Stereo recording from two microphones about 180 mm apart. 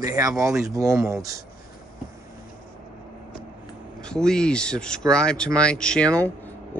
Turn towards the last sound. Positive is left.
turn(degrees=5)  # may be behind; listen again after turning